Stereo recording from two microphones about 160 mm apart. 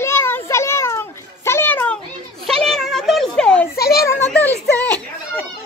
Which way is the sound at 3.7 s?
75° left (ahead or behind).